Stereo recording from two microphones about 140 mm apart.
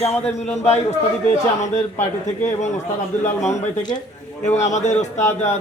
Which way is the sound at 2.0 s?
55° left (ahead or behind).